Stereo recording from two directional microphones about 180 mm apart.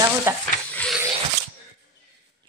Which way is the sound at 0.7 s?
5° left (ahead or behind).